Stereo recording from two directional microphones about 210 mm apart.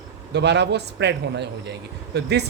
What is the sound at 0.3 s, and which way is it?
Speech, 55° right (ahead or behind).